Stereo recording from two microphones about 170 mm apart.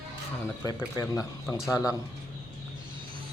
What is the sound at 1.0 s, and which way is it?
Speech, 20° left (ahead or behind).